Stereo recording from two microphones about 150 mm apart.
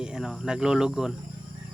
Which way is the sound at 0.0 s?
5° right (ahead or behind).